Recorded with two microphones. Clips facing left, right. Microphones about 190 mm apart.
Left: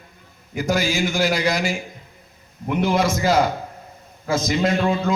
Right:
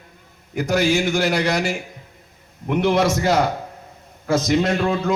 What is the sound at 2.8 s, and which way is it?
A man's voice, 65° right (ahead or behind).